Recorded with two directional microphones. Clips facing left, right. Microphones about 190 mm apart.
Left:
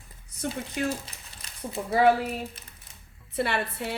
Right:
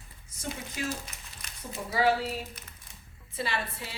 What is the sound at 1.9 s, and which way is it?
Speech, 55° left (ahead or behind).